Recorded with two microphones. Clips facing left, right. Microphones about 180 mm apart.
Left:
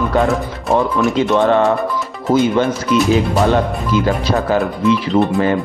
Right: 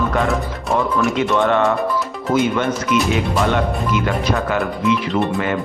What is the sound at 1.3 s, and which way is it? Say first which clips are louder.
Speech: left 4 dB; 35° left (ahead or behind).